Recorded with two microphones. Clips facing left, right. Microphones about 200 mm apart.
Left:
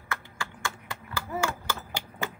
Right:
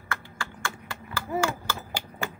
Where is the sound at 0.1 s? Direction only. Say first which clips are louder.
Right 1 dB; 20° left (ahead or behind).